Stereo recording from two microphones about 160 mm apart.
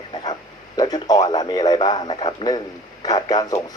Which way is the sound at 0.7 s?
25° left (ahead or behind).